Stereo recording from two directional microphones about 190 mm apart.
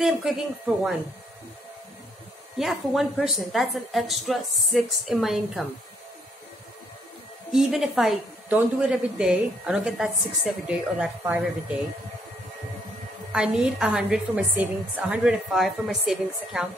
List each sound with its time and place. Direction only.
0.0 s a woman's voice: centre (ahead or behind)
2.6 s a woman's voice: centre (ahead or behind)
7.5 s a woman's voice: centre (ahead or behind)
13.3 s a woman's voice: 5° right (ahead or behind)